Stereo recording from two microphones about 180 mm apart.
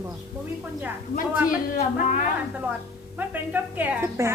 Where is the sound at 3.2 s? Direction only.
10° right (ahead or behind).